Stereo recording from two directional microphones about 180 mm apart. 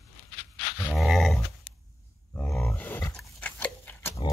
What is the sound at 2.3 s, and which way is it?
Grunt, 10° left (ahead or behind).